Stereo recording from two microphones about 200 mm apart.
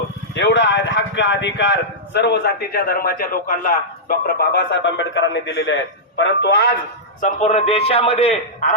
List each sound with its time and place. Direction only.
0.3 s a man's voice: 65° left (ahead or behind)
7.2 s a man's voice: 35° left (ahead or behind)